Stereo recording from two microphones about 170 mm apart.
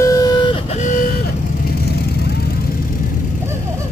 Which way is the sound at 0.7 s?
45° left (ahead or behind).